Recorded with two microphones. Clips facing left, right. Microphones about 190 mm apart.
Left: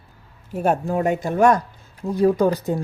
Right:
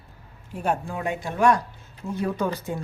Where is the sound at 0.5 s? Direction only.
45° left (ahead or behind).